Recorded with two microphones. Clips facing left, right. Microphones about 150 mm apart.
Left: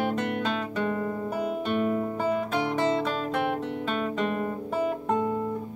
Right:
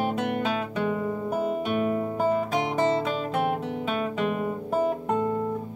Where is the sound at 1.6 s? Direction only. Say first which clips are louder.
Right 1 dB; 5° right (ahead or behind).